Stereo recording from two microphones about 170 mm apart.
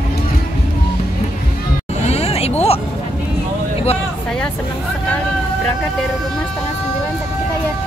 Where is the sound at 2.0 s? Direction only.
35° left (ahead or behind).